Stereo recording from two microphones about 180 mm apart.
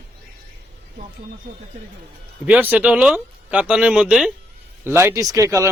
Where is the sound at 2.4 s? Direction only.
10° right (ahead or behind).